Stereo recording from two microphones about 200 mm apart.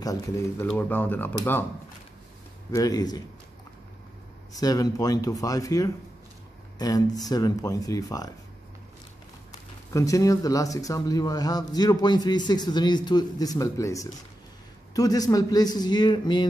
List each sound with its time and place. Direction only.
0.0 s speech: 20° left (ahead or behind)
2.7 s speech: 20° left (ahead or behind)
4.5 s a man's voice: 20° left (ahead or behind)
9.9 s a man's voice: 15° left (ahead or behind)